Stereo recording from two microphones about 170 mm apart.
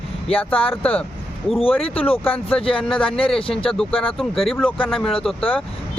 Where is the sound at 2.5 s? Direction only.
5° left (ahead or behind).